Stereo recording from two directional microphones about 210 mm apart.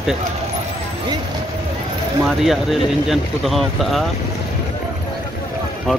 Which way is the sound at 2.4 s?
Centre (ahead or behind).